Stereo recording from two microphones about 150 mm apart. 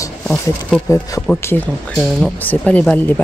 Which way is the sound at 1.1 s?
20° left (ahead or behind).